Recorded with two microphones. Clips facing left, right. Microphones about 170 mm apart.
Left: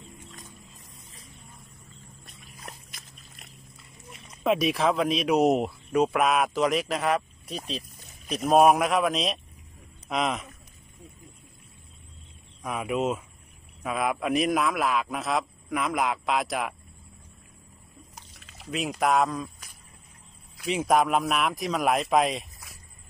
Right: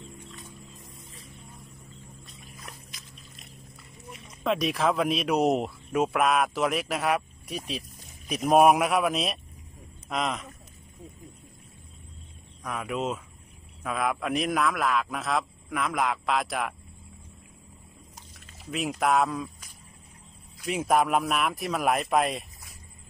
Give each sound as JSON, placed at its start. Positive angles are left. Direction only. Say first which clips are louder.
{"t": 2.9, "sound": "a sound", "louder": "right 2 dB", "side_deg": 55}
{"t": 4.4, "sound": "speech", "louder": "left 2 dB", "side_deg": 5}
{"t": 12.6, "sound": "speech", "louder": "left 3 dB", "side_deg": 10}
{"t": 18.4, "sound": "pour", "louder": "left 1 dB", "side_deg": 80}
{"t": 18.7, "sound": "speech", "louder": "left 1 dB", "side_deg": 0}
{"t": 20.6, "sound": "speech", "louder": "left 1 dB", "side_deg": -5}